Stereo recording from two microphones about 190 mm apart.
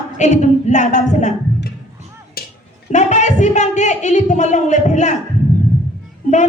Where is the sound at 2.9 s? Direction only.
40° left (ahead or behind).